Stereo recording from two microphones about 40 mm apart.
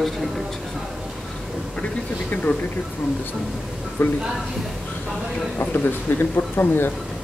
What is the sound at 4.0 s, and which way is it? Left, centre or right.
Speech, left.